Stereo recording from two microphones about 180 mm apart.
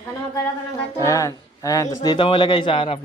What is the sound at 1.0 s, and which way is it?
Speech, 15° left (ahead or behind).